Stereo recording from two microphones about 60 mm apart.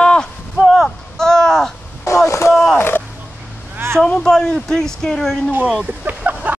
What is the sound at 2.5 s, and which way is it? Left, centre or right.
Speech, centre.